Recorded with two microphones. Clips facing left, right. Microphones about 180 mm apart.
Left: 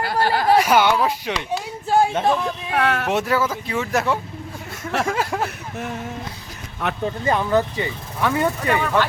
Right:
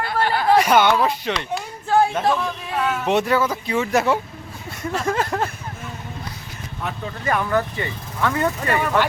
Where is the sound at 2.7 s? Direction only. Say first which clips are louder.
Left 3 dB; 70° left (ahead or behind).